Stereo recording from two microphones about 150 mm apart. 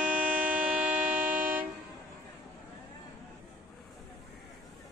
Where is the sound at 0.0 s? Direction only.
10° right (ahead or behind).